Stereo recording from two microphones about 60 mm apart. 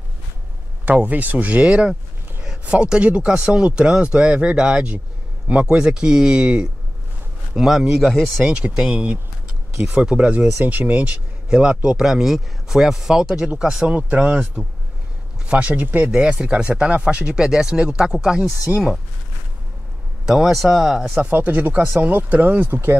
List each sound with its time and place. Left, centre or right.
0.8 s speech: right; by 8.3 s centre
8.5 s speech: centre
11.4 s speech: centre
15.4 s speech: right
16.1 s speech: centre
20.2 s speech: centre
21.3 s speech: right